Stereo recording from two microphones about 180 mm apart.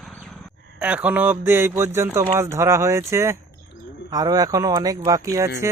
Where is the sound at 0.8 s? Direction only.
5° right (ahead or behind).